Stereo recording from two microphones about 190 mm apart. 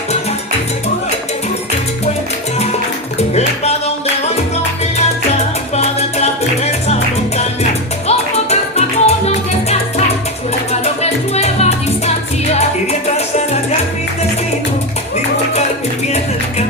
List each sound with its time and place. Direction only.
3.3 s music: 35° left (ahead or behind)
5.7 s music: 35° left (ahead or behind)
8.0 s music: 35° left (ahead or behind)